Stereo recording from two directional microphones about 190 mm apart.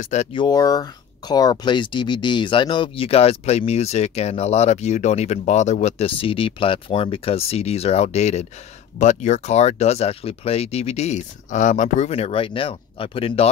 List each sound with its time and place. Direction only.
0.0 s speech: 35° left (ahead or behind)